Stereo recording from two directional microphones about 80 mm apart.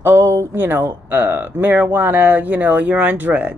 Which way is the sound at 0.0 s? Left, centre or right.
Right.